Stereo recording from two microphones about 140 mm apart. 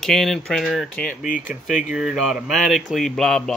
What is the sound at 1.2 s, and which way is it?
Speech, 75° left (ahead or behind).